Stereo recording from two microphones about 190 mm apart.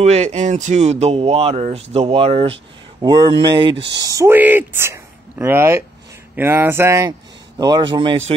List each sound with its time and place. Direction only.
0.0 s speech: 35° right (ahead or behind)